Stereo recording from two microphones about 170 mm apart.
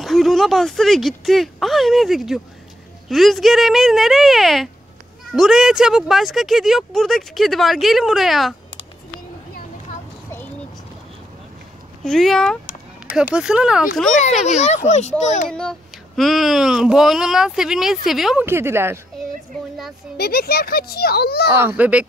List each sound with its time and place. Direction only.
0.0 s speech: centre (ahead or behind)
12.0 s speech: 5° left (ahead or behind)
14.4 s speech: 40° left (ahead or behind)
15.5 s speech: 5° left (ahead or behind)
18.4 s speech: 15° right (ahead or behind)
20.2 s speech: 65° left (ahead or behind)
21.5 s speech: 10° right (ahead or behind)